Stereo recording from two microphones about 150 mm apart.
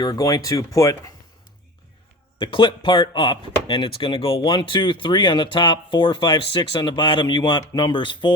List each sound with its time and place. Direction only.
0.0 s speech: 25° left (ahead or behind)
2.4 s speech: 35° left (ahead or behind)